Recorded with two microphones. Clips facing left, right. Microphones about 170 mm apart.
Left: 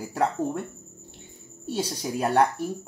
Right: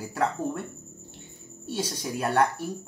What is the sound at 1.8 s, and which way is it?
Speech, 35° left (ahead or behind).